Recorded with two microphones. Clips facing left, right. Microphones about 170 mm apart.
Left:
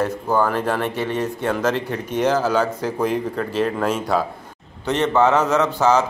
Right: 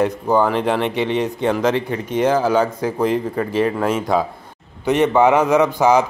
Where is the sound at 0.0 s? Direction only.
15° right (ahead or behind).